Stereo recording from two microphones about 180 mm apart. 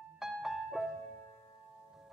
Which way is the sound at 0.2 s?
Centre (ahead or behind).